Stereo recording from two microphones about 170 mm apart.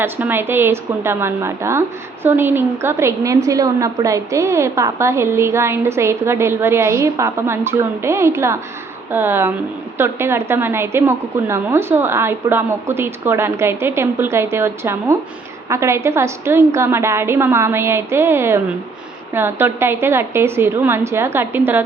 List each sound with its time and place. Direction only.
0.0 s a woman's voice: 10° right (ahead or behind)